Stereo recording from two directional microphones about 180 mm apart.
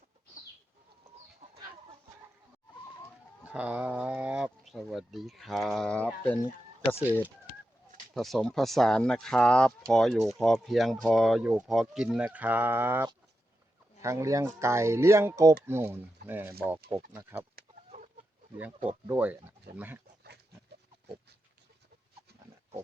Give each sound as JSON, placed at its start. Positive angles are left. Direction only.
{"t": 1.4, "sound": "chicken", "side_deg": -35}
{"t": 3.4, "sound": "speech", "side_deg": -5}
{"t": 8.1, "sound": "speech", "side_deg": 0}
{"t": 16.9, "sound": "speech", "side_deg": -35}
{"t": 17.5, "sound": "chicken", "side_deg": -50}
{"t": 18.5, "sound": "speech", "side_deg": -10}